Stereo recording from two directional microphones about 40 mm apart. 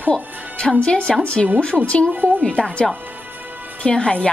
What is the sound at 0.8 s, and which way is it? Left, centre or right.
A woman's voice, left.